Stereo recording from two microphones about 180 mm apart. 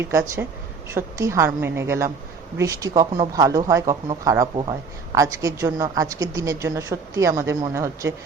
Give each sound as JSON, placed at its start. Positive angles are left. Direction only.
{"t": 0.0, "sound": "speech", "side_deg": -15}